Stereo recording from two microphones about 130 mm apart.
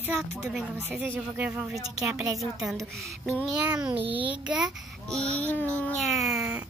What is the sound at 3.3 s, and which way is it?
A child's voice, 10° right (ahead or behind).